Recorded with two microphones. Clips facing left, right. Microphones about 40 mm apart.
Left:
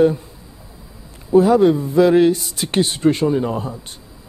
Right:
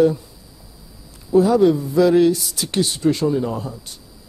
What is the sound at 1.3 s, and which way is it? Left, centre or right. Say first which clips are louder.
Speech: left 2 dB; left.